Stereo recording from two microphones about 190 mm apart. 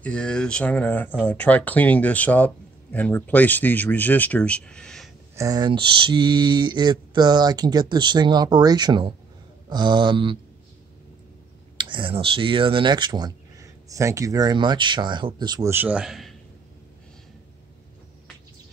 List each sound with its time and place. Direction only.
0.0 s speech: 5° left (ahead or behind)
5.3 s speech: 20° right (ahead or behind)
11.7 s speech: 25° right (ahead or behind); by 16.3 s centre (ahead or behind)